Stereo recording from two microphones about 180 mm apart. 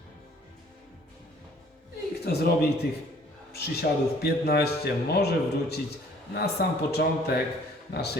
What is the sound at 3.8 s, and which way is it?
Speech, 50° left (ahead or behind).